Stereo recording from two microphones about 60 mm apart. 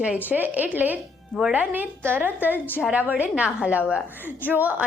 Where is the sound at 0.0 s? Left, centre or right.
Right.